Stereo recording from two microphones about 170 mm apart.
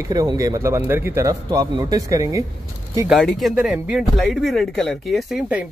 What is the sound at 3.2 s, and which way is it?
Speech, 5° left (ahead or behind).